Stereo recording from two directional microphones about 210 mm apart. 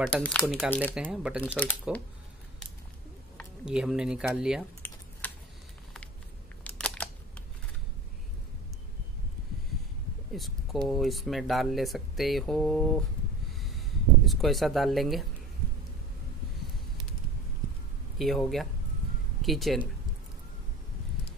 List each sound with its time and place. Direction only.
0.0 s speech: 5° left (ahead or behind)
0.9 s speech: centre (ahead or behind)
1.5 s speech: 5° left (ahead or behind)
3.6 s speech: 5° right (ahead or behind)
5.2 s a sound: 5° left (ahead or behind)
6.6 s computer keyboard: 5° left (ahead or behind)
10.3 s speech: centre (ahead or behind)
13.5 s a sound: centre (ahead or behind)
18.1 s speech: centre (ahead or behind)